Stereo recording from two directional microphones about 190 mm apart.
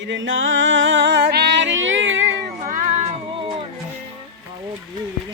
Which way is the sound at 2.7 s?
45° right (ahead or behind).